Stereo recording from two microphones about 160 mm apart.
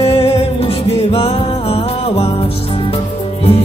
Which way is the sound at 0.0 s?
40° left (ahead or behind).